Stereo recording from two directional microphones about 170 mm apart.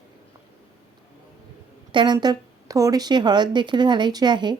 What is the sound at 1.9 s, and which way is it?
Speech, 25° right (ahead or behind).